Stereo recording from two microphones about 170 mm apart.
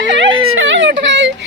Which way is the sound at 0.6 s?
90° right.